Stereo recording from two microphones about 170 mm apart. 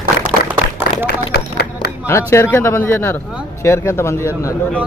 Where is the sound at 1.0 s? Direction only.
75° left (ahead or behind).